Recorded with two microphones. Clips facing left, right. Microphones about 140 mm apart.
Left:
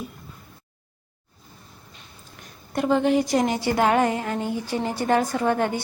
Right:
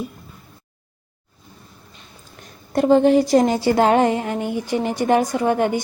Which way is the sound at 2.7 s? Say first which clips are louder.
Right 6 dB; 35° right (ahead or behind).